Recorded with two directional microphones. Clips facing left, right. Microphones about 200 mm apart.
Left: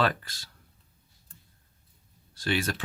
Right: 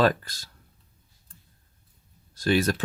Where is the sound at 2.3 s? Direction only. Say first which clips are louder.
Right 6 dB; 40° right (ahead or behind).